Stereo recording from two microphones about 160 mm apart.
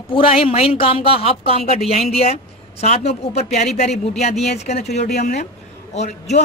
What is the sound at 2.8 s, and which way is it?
Speech, 40° left (ahead or behind).